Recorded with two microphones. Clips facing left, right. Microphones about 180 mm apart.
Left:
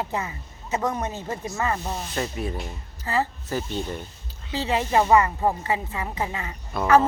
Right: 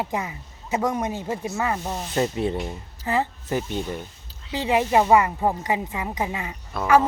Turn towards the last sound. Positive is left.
turn(degrees=0)  # may be behind; listen again after turning